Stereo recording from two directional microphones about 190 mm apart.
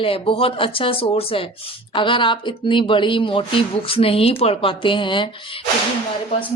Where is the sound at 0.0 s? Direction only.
30° left (ahead or behind).